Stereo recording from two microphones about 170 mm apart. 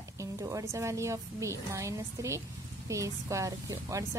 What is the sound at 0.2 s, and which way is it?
A woman's voice, 20° right (ahead or behind).